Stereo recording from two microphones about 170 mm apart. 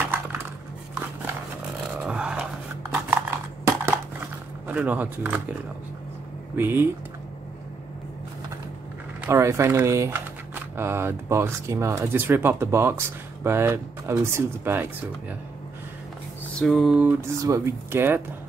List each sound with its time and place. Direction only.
0.0 s dog: 10° right (ahead or behind)
2.0 s a sound: 5° right (ahead or behind)
4.6 s speech: 10° right (ahead or behind)
9.2 s speech: 15° right (ahead or behind)
16.5 s speech: centre (ahead or behind)
17.4 s speech: 15° right (ahead or behind)